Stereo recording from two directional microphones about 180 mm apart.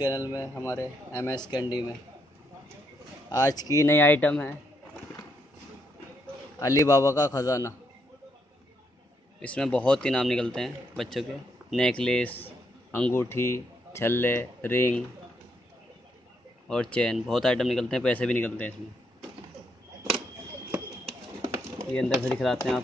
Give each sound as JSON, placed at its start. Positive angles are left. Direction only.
{"t": 0.0, "sound": "speech", "side_deg": 20}
{"t": 3.3, "sound": "speech", "side_deg": 20}
{"t": 6.6, "sound": "speech", "side_deg": 20}
{"t": 9.4, "sound": "speech", "side_deg": 5}
{"t": 16.6, "sound": "speech", "side_deg": 5}
{"t": 22.2, "sound": "speech", "side_deg": 0}